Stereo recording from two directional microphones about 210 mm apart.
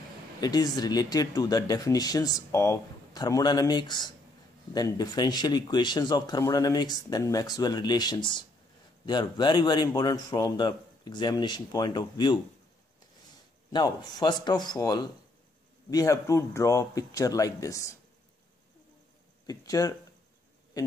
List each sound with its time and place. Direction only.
0.4 s speech: 20° left (ahead or behind)
13.7 s speech: 20° left (ahead or behind)
19.4 s speech: 15° left (ahead or behind)